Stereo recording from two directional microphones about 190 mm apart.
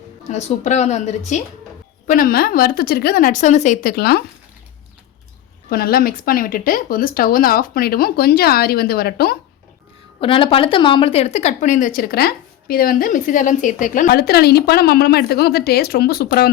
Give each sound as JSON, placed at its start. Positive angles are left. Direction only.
{"t": 0.3, "sound": "speech", "side_deg": 35}
{"t": 5.6, "sound": "speech", "side_deg": 50}
{"t": 10.2, "sound": "speech", "side_deg": 25}